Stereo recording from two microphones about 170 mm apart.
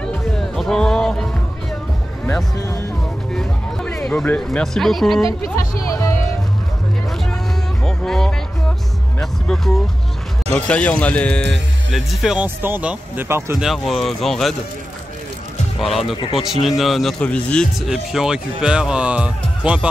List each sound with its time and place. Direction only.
0.0 s music: 5° left (ahead or behind)
3.3 s speech: 5° left (ahead or behind)
5.9 s music: 20° left (ahead or behind)
7.8 s music: 5° left (ahead or behind)
10.5 s speech: 5° left (ahead or behind); by 13.6 s 15° right (ahead or behind)
13.6 s speech: centre (ahead or behind)
15.8 s speech: centre (ahead or behind)
16.2 s speech: 35° left (ahead or behind)
16.6 s speech: centre (ahead or behind)